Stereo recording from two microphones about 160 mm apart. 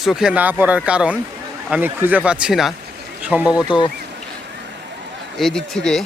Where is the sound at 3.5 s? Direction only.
30° left (ahead or behind).